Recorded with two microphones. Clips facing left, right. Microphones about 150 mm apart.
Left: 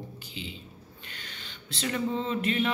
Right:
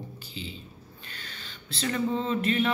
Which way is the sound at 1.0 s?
20° left (ahead or behind).